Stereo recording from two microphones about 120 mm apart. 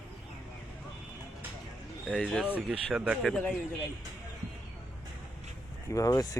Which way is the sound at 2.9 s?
10° right (ahead or behind).